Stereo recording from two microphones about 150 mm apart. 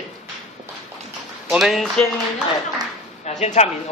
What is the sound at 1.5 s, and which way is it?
Speech, centre (ahead or behind).